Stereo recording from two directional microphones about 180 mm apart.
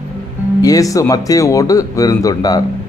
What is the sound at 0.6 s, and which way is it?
A man's voice, 20° left (ahead or behind).